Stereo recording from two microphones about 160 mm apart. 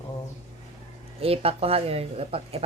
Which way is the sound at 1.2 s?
35° right (ahead or behind).